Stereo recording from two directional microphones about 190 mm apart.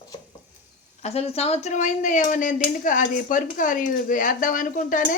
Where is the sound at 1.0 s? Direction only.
35° left (ahead or behind).